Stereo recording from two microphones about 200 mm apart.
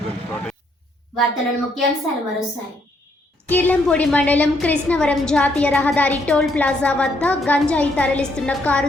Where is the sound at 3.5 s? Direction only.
10° left (ahead or behind).